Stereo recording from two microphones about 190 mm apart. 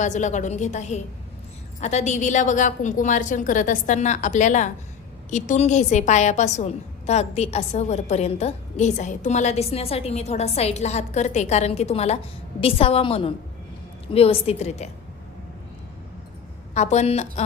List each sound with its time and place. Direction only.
0.0 s a woman's voice: 40° left (ahead or behind)
16.7 s a woman's voice: 35° left (ahead or behind)